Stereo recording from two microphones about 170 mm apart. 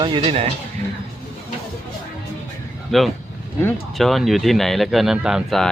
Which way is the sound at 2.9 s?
Centre (ahead or behind).